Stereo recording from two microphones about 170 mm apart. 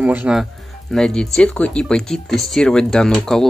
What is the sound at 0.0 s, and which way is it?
Speech, 10° right (ahead or behind).